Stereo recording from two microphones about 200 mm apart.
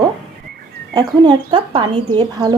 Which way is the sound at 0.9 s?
20° right (ahead or behind).